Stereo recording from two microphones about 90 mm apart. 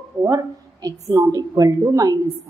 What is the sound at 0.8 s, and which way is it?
A woman's voice, 40° right (ahead or behind).